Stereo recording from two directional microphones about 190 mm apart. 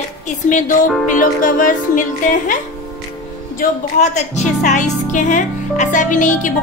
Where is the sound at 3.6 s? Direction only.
40° left (ahead or behind).